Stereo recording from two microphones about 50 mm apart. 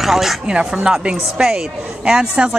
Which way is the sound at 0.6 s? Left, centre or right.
Centre.